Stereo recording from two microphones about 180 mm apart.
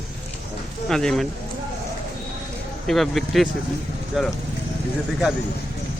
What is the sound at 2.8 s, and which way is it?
Speech, centre (ahead or behind).